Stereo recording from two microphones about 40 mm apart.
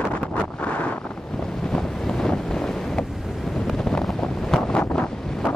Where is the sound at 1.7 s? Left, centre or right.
Centre.